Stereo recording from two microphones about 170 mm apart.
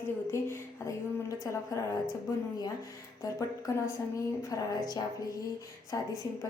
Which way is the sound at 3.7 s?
20° left (ahead or behind).